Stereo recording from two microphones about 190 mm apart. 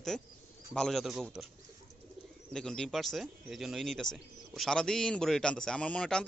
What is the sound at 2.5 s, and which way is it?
Speech, 5° left (ahead or behind).